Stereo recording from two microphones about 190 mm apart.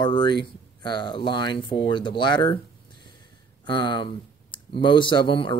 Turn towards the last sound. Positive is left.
turn(degrees=25)  # may be behind; listen again after turning